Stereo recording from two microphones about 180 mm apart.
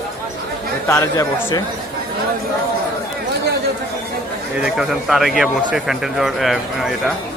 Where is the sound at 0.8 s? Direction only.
20° left (ahead or behind).